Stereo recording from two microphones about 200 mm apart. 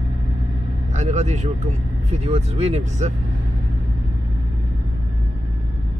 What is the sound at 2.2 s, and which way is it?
Speech, 30° right (ahead or behind).